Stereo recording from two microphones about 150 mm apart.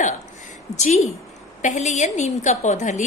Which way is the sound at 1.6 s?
55° left (ahead or behind).